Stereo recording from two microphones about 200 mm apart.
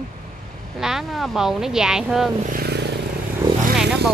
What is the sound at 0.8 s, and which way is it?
Speech, centre (ahead or behind).